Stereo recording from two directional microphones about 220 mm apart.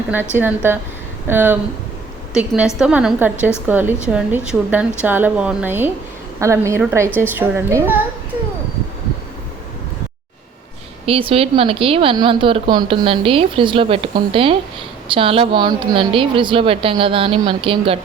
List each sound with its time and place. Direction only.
0.3 s a woman's voice: 10° right (ahead or behind)
11.0 s a woman's voice: 25° right (ahead or behind)